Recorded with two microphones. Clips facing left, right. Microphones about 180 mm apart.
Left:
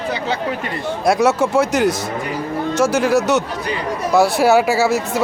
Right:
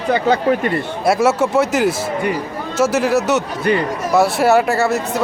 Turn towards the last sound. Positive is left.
turn(degrees=0)  # may be behind; listen again after turning